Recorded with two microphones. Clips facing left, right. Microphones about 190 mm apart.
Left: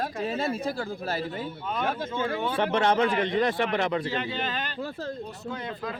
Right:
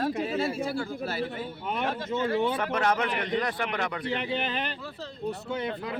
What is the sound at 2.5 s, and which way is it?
A man's voice, 30° left (ahead or behind).